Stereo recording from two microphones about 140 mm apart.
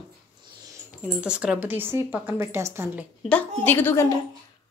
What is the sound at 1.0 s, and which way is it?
Speech, 5° right (ahead or behind).